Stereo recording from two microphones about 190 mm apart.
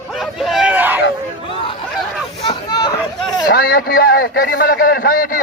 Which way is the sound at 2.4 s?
20° left (ahead or behind).